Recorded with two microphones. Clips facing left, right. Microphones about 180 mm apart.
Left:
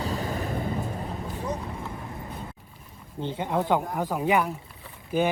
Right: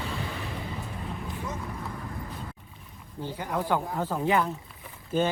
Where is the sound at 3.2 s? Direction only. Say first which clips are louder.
Left 4 dB; 25° left (ahead or behind).